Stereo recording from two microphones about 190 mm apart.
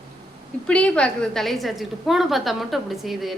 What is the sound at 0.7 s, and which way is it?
Speech, 5° left (ahead or behind).